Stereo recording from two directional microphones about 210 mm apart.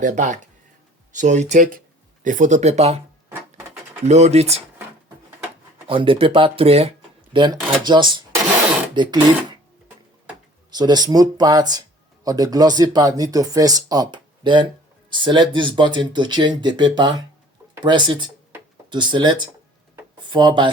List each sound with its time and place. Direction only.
0.0 s speech: 35° right (ahead or behind)
4.0 s speech: 30° right (ahead or behind)
5.9 s speech: 25° right (ahead or behind)
10.7 s speech: 20° right (ahead or behind)
18.5 s a sound: 20° right (ahead or behind)
20.3 s speech: 20° right (ahead or behind)